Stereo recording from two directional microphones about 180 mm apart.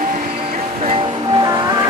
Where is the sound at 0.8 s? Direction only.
25° right (ahead or behind).